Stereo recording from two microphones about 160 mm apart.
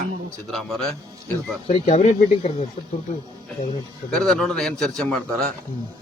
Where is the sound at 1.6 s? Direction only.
40° left (ahead or behind).